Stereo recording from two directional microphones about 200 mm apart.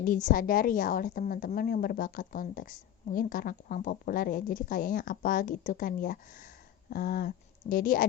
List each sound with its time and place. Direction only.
0.0 s a woman's voice: 40° left (ahead or behind)